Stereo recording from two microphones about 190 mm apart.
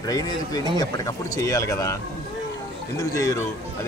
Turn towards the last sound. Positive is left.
turn(degrees=15)  # may be behind; listen again after turning